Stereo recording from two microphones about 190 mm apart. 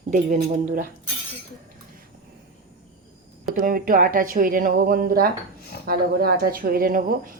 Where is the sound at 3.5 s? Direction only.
50° right (ahead or behind).